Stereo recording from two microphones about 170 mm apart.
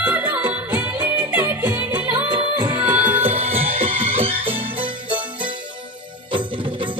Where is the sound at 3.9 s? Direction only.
30° right (ahead or behind).